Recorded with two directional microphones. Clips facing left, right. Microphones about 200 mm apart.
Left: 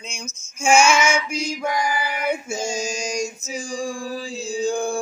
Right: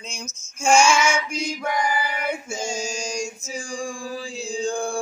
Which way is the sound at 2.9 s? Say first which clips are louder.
Left 3 dB; 10° left (ahead or behind).